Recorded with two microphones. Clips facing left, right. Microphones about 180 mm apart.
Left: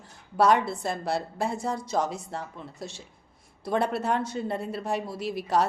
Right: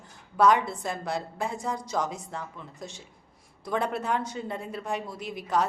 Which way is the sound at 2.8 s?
10° left (ahead or behind).